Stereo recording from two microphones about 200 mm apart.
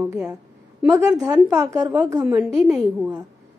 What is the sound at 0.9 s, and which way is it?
A woman's voice, 20° right (ahead or behind).